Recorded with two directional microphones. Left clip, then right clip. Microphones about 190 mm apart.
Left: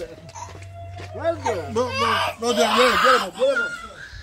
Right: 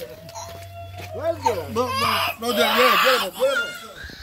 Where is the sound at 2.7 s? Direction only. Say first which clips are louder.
Even; 70° left (ahead or behind).